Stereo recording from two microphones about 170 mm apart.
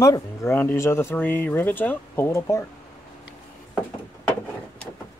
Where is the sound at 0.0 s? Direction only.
20° left (ahead or behind).